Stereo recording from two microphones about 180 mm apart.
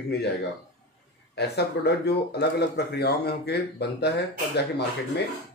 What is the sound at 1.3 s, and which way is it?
Speech, 70° left (ahead or behind).